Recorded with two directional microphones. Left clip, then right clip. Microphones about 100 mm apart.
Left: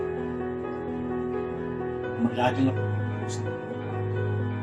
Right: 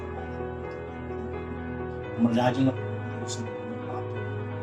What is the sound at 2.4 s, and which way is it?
Speech, 30° right (ahead or behind).